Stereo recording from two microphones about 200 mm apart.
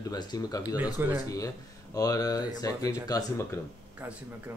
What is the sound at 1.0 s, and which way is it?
Speech, 10° right (ahead or behind).